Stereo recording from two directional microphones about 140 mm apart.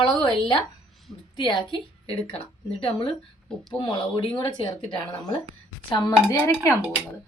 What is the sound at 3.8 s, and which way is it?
Speech, 40° left (ahead or behind).